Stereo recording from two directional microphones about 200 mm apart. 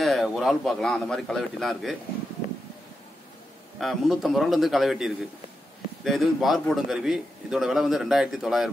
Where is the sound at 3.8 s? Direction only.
Centre (ahead or behind).